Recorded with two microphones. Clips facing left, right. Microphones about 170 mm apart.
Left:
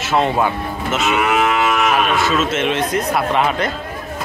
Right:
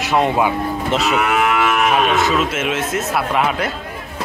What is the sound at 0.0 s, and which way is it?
Speech, 15° right (ahead or behind).